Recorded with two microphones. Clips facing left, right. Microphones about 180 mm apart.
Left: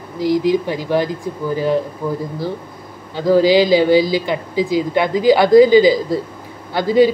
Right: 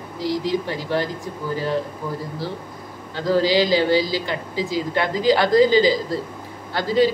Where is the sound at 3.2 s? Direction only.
15° left (ahead or behind).